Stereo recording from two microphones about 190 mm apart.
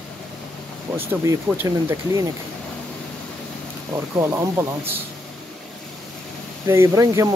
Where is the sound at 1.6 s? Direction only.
15° right (ahead or behind).